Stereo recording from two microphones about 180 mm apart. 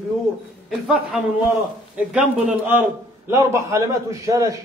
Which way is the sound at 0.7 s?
Centre (ahead or behind).